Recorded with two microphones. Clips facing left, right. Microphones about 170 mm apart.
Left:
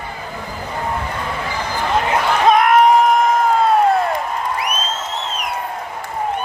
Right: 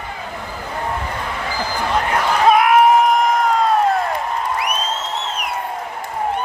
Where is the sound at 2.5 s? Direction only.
5° right (ahead or behind).